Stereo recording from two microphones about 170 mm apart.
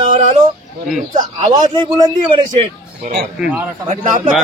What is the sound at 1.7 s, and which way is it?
Speech, 25° right (ahead or behind).